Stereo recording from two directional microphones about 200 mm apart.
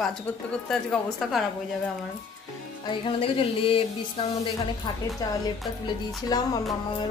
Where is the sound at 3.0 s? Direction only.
25° left (ahead or behind).